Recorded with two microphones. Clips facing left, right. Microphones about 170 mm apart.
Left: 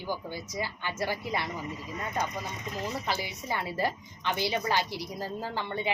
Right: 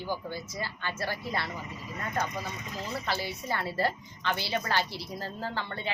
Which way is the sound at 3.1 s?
15° left (ahead or behind).